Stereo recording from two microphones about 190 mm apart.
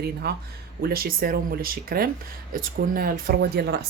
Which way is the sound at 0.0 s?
60° right (ahead or behind).